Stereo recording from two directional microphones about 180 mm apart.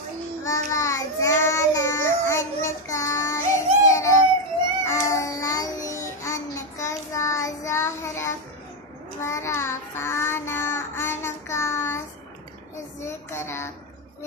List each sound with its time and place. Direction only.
0.4 s child singing: 15° left (ahead or behind)
3.8 s baby cry: 15° left (ahead or behind)
4.8 s child singing: 15° left (ahead or behind)
13.0 s a sound: 15° left (ahead or behind)